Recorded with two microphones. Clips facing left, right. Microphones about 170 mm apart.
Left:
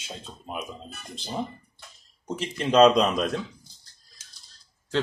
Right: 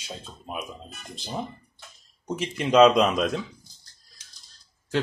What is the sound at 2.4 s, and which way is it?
Speech, 5° right (ahead or behind).